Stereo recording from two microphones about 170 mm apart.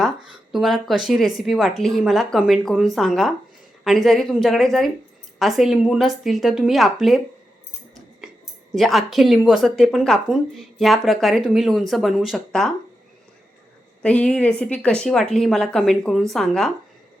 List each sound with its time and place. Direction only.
0.5 s speech: centre (ahead or behind)
8.7 s speech: centre (ahead or behind)
14.0 s speech: 5° left (ahead or behind)